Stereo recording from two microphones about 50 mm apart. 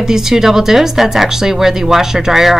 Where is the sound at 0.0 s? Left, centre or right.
Centre.